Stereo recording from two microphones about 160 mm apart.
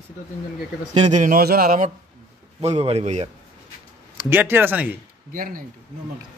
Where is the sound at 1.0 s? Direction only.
50° right (ahead or behind).